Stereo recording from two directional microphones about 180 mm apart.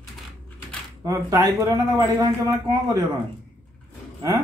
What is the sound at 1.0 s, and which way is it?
Speech, 15° right (ahead or behind).